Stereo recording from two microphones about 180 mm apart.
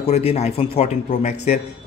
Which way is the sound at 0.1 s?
35° left (ahead or behind).